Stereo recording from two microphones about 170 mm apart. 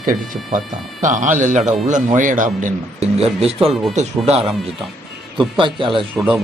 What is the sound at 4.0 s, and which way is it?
Speech, 35° right (ahead or behind).